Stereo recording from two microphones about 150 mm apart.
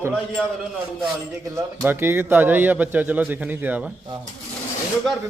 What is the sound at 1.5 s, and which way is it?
A man's voice, 15° right (ahead or behind).